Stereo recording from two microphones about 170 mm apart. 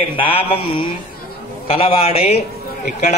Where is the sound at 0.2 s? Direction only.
35° left (ahead or behind).